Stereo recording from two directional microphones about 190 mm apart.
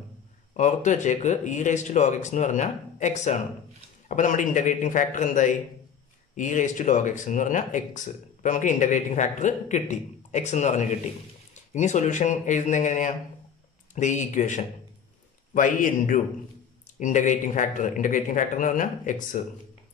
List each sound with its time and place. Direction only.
0.6 s a man's voice: 40° left (ahead or behind)